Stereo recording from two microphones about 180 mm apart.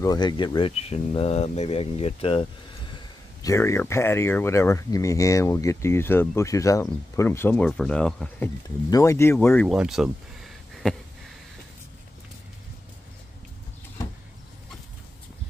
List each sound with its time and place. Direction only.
0.0 s speech: 20° left (ahead or behind)
3.4 s speech: 15° left (ahead or behind)
8.6 s speech: 15° left (ahead or behind)
9.7 s a sound: centre (ahead or behind)